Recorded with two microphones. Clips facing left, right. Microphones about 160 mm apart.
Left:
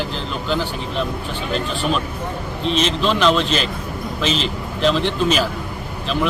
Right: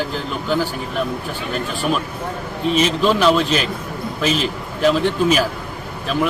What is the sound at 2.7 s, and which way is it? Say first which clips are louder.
A man's voice: right 3 dB; 10° right (ahead or behind).